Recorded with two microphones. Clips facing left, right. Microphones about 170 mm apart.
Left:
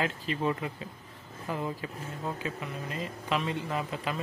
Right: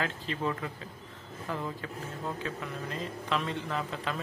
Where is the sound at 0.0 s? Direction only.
15° left (ahead or behind).